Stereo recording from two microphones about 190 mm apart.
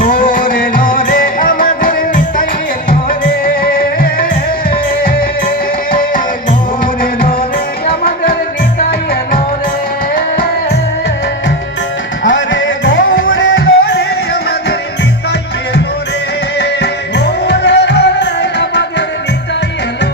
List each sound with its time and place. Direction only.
0.0 s music: 45° left (ahead or behind)
10.2 s music: 50° left (ahead or behind)
12.2 s music: 80° left
16.6 s music: 65° left (ahead or behind)